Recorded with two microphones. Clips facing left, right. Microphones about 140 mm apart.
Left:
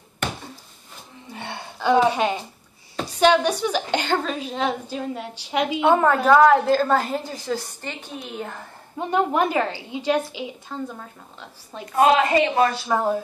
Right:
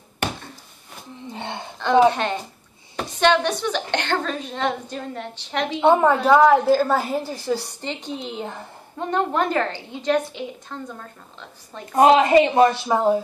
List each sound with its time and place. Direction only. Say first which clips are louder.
1.3 s a sound: right 2 dB; 20° right (ahead or behind)
1.8 s a woman's voice: right 2 dB; 10° left (ahead or behind)
5.9 s a woman's voice: right 2 dB; 15° right (ahead or behind)
8.9 s a woman's voice: left 1 dB; 10° left (ahead or behind)
11.9 s a woman's voice: right 3 dB; 20° right (ahead or behind)